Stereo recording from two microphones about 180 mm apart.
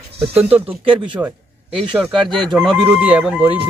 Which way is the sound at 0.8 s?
25° right (ahead or behind).